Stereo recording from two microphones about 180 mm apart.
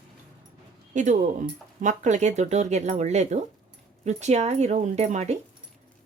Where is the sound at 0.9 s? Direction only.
45° right (ahead or behind).